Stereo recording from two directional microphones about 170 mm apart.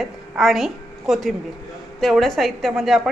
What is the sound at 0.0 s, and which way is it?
A woman's voice, centre (ahead or behind).